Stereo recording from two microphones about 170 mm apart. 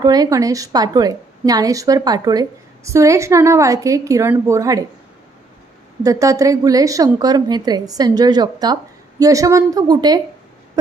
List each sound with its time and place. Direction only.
0.0 s a woman's voice: 20° right (ahead or behind)
6.0 s a woman's voice: 20° right (ahead or behind)